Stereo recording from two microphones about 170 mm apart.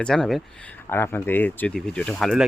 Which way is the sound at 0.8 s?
15° left (ahead or behind).